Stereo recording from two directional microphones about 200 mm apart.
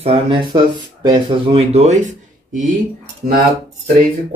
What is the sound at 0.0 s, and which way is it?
Speech, 25° right (ahead or behind).